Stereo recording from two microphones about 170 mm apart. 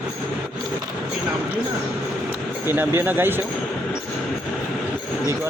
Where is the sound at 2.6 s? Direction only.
15° right (ahead or behind).